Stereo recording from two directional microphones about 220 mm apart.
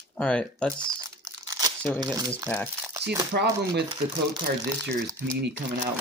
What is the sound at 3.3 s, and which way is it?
Speech, 50° right (ahead or behind).